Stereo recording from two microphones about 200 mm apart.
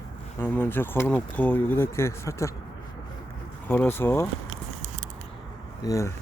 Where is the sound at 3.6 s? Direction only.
10° left (ahead or behind).